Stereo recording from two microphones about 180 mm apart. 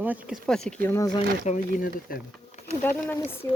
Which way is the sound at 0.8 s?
15° left (ahead or behind).